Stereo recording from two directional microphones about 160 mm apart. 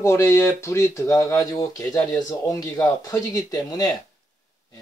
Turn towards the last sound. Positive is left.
turn(degrees=25)  # may be behind; listen again after turning